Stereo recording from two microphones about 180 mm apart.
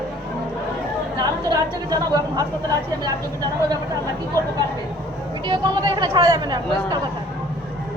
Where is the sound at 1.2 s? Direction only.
20° right (ahead or behind).